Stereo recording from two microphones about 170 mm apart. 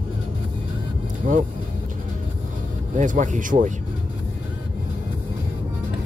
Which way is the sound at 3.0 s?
50° right (ahead or behind).